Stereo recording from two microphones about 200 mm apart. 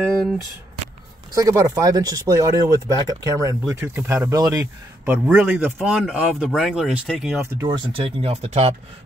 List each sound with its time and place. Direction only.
1.3 s speech: 15° right (ahead or behind); by 7.4 s centre (ahead or behind)
7.4 s speech: 25° right (ahead or behind)